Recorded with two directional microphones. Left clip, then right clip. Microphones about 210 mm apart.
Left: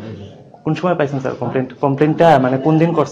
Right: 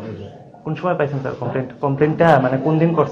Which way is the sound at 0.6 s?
45° left (ahead or behind).